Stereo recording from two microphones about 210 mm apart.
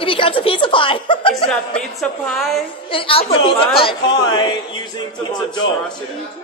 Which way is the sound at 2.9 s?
25° left (ahead or behind).